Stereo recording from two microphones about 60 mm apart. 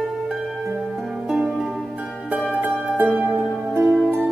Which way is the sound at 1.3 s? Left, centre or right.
Centre.